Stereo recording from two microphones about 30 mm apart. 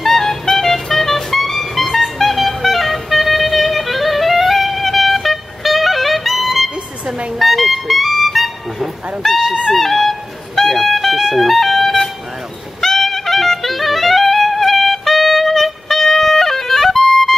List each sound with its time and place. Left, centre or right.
0.0 s music: centre